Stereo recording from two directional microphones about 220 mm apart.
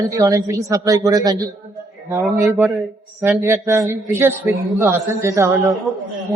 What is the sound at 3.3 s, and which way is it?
A man's voice, 10° right (ahead or behind).